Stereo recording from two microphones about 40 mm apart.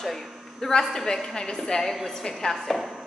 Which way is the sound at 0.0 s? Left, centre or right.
Centre.